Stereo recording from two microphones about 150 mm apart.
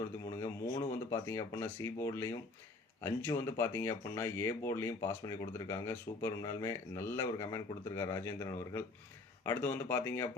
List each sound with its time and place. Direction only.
0.3 s speech: 20° left (ahead or behind)